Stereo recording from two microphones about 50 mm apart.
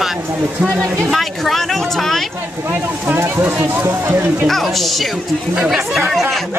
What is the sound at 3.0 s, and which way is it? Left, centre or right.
Speech, right.